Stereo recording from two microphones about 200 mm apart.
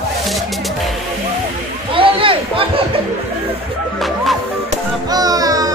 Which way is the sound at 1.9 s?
25° right (ahead or behind).